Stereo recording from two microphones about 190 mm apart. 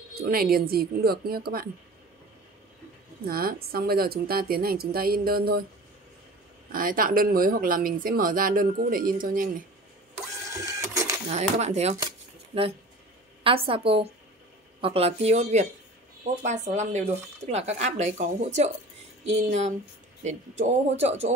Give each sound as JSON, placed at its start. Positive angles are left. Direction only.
{"t": 0.1, "sound": "speech", "side_deg": -55}
{"t": 3.3, "sound": "speech", "side_deg": -50}
{"t": 6.7, "sound": "speech", "side_deg": -45}
{"t": 10.1, "sound": "printer", "side_deg": -15}
{"t": 11.3, "sound": "speech", "side_deg": -35}
{"t": 13.4, "sound": "a woman's voice", "side_deg": -30}